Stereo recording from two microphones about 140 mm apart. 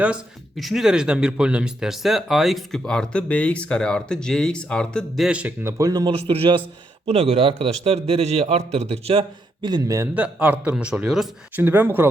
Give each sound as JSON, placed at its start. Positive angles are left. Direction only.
{"t": 0.0, "sound": "speech", "side_deg": -5}
{"t": 6.1, "sound": "a man's voice", "side_deg": -45}
{"t": 10.2, "sound": "a man's voice", "side_deg": -10}
{"t": 11.5, "sound": "a man's voice", "side_deg": -15}